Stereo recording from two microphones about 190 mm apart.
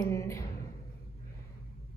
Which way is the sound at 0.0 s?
15° left (ahead or behind).